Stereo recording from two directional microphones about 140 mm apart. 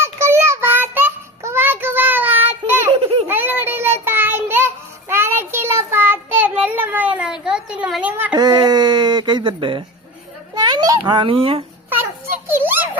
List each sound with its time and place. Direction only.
0.0 s child singing: 20° right (ahead or behind)
2.9 s baby laughter: 40° right (ahead or behind)
3.2 s child singing: 15° right (ahead or behind)
7.4 s a sound: 5° right (ahead or behind)
8.4 s a sound: 30° right (ahead or behind)
12.5 s giggle: 15° right (ahead or behind)